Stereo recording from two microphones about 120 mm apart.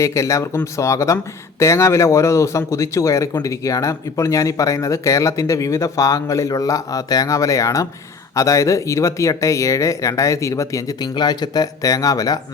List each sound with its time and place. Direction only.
0.0 s speech: 25° left (ahead or behind)